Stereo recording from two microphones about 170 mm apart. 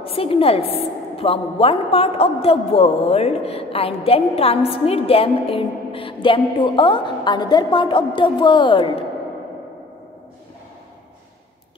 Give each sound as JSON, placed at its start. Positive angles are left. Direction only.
{"t": 0.0, "sound": "a woman's voice", "side_deg": 35}